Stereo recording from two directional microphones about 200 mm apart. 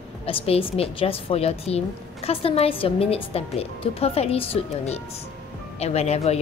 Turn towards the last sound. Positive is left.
turn(degrees=30)  # may be behind; listen again after turning